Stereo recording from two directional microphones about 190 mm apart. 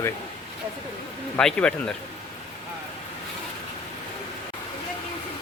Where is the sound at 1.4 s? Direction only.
5° left (ahead or behind).